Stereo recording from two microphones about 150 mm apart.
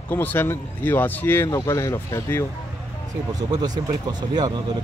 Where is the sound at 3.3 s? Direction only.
25° right (ahead or behind).